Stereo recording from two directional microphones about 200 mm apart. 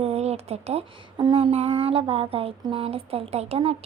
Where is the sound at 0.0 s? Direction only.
30° right (ahead or behind).